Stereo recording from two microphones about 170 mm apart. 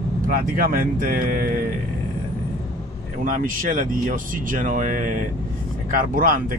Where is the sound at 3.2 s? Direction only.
55° right (ahead or behind).